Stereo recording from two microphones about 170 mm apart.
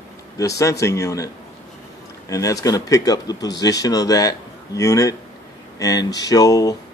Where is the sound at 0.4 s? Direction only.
20° left (ahead or behind).